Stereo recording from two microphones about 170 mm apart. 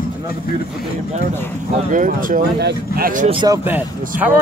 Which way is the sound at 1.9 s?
50° right (ahead or behind).